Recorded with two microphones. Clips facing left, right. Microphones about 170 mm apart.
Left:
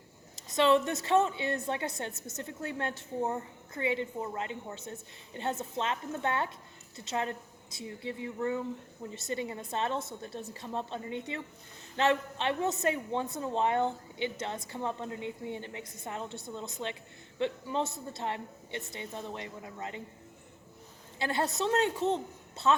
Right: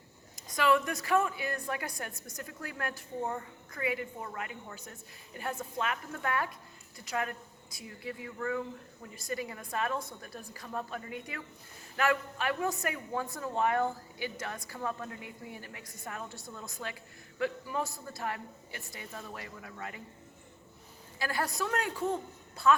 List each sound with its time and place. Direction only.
0.3 s a woman's voice: 25° left (ahead or behind)
21.2 s a woman's voice: 25° left (ahead or behind)